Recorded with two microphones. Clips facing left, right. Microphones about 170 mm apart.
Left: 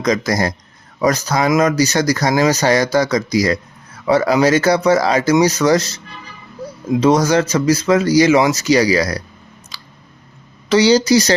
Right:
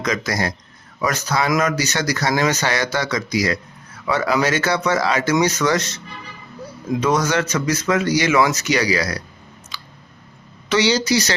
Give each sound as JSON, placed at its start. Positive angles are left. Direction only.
{"t": 0.3, "sound": "speech", "side_deg": 40}
{"t": 7.0, "sound": "speech", "side_deg": 35}
{"t": 9.7, "sound": "a sound", "side_deg": 35}
{"t": 10.7, "sound": "speech", "side_deg": 40}